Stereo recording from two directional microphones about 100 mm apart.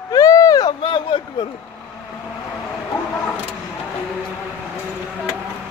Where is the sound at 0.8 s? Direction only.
55° left (ahead or behind).